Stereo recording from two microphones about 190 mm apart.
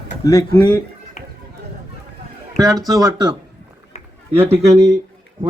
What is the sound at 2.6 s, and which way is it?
Speech, 20° right (ahead or behind).